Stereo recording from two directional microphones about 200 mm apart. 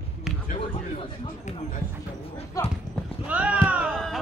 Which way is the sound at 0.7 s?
25° left (ahead or behind).